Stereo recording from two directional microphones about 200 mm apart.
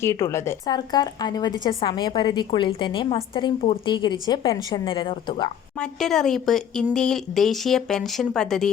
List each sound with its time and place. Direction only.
0.0 s a woman's voice: 15° left (ahead or behind)
5.8 s speech: centre (ahead or behind)